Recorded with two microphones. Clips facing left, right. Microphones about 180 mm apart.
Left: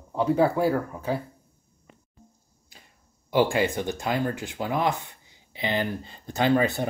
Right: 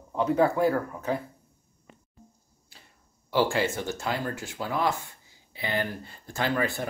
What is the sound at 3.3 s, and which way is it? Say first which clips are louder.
Speech: left 3 dB; 15° left (ahead or behind).